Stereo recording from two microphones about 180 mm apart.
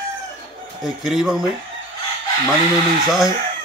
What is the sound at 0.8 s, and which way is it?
Speech, centre (ahead or behind).